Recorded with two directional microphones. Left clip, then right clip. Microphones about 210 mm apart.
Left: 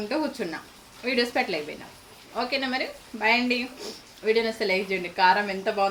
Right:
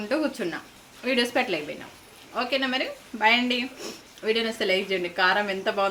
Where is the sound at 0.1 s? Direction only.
25° right (ahead or behind).